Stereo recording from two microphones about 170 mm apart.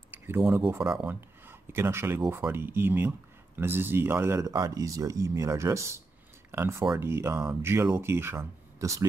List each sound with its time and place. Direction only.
0.1 s speech: 10° right (ahead or behind)